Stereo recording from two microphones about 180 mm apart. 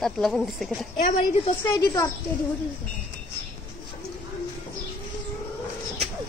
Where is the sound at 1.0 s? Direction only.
45° left (ahead or behind).